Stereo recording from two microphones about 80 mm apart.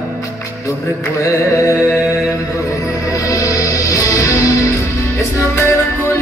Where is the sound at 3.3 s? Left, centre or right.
Left.